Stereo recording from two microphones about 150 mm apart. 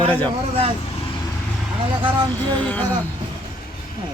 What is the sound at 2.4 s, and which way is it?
Speech, 10° left (ahead or behind).